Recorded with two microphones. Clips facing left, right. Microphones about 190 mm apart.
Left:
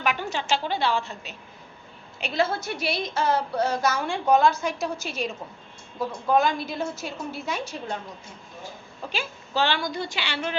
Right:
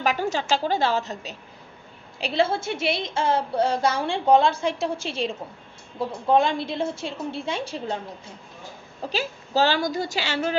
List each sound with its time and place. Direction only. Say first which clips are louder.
0.0 s a woman's voice: right 3 dB; 40° right (ahead or behind)
9.0 s a woman's voice: right 5 dB; 35° right (ahead or behind)